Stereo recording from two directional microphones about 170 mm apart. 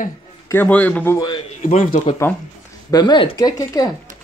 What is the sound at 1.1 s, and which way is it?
Speech, 25° left (ahead or behind).